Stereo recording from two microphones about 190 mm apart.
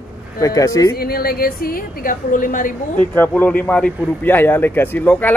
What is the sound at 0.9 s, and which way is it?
A woman's voice, 55° left (ahead or behind).